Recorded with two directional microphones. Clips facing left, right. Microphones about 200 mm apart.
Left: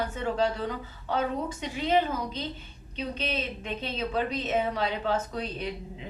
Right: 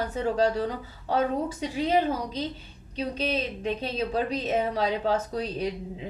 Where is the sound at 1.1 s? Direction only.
35° right (ahead or behind).